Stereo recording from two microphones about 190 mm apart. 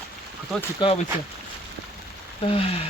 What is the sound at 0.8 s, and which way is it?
Speech, 25° left (ahead or behind).